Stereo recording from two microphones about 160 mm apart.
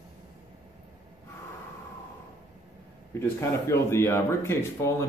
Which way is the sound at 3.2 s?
15° left (ahead or behind).